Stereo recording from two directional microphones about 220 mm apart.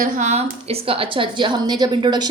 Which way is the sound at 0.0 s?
30° right (ahead or behind).